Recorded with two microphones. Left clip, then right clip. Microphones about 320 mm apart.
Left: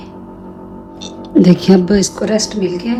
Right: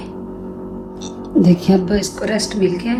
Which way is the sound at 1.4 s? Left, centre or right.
Left.